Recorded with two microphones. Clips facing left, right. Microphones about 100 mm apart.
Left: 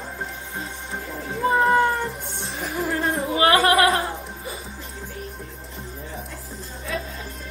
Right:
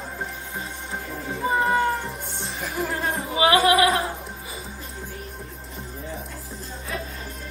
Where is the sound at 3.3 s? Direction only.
45° left (ahead or behind).